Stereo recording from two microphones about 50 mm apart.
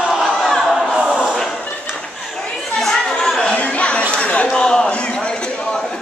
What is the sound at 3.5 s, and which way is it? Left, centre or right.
Chatter, left.